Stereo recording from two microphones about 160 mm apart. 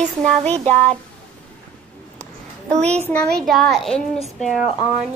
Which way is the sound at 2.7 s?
5° left (ahead or behind).